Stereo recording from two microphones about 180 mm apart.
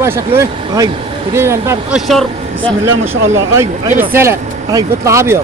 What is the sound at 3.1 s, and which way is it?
Speech, 90° right.